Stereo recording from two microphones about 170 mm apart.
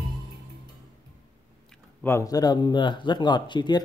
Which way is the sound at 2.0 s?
15° left (ahead or behind).